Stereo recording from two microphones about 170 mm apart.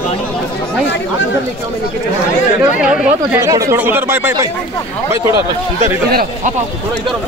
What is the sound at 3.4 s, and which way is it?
Speech, 20° right (ahead or behind).